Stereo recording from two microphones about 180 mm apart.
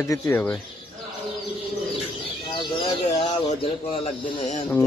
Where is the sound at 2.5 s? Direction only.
25° left (ahead or behind).